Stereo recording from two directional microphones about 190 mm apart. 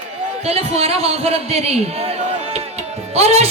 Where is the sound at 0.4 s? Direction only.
30° right (ahead or behind).